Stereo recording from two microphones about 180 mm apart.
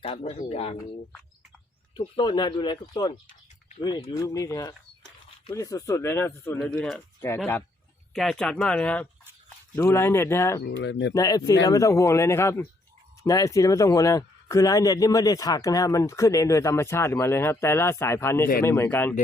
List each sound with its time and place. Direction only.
0.0 s speech: 35° left (ahead or behind)
2.0 s speech: 25° left (ahead or behind)
10.6 s speech: 75° left (ahead or behind)
11.1 s speech: 20° left (ahead or behind)